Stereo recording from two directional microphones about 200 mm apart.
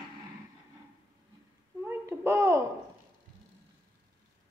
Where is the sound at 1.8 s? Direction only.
15° right (ahead or behind).